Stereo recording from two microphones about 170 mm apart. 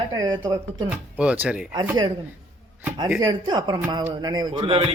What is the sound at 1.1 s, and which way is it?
Speech, 10° right (ahead or behind).